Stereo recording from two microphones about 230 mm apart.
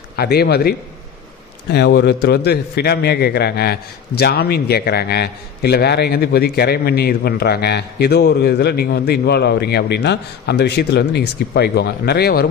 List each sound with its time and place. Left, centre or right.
0.2 s a man's voice: left